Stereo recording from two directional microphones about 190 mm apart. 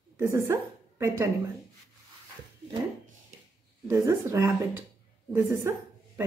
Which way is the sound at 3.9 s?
15° right (ahead or behind).